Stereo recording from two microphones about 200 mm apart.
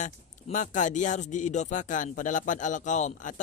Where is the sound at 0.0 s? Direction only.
40° left (ahead or behind).